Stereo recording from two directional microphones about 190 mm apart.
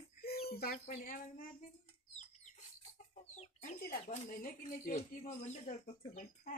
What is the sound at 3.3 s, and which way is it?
Chicken, 40° left (ahead or behind).